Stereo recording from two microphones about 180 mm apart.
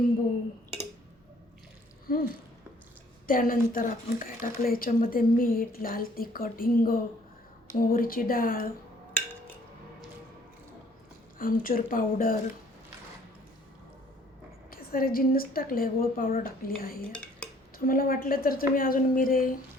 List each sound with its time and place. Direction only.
2.1 s a sound: 55° left (ahead or behind)
3.2 s speech: 50° left (ahead or behind)
11.3 s speech: 50° left (ahead or behind)
14.7 s speech: 55° left (ahead or behind)
17.0 s cutlery: 5° left (ahead or behind)
17.8 s speech: 55° left (ahead or behind)